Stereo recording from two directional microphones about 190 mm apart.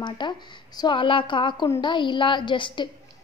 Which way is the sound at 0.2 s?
25° left (ahead or behind).